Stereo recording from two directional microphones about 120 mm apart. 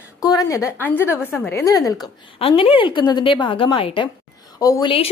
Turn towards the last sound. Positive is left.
turn(degrees=30)  # may be behind; listen again after turning